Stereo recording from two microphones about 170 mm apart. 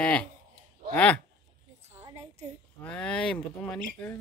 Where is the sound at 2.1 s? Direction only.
40° right (ahead or behind).